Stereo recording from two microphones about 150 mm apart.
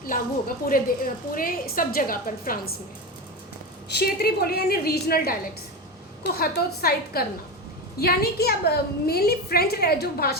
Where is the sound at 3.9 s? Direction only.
90° left.